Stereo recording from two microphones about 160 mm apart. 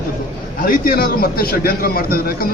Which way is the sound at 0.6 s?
65° left (ahead or behind).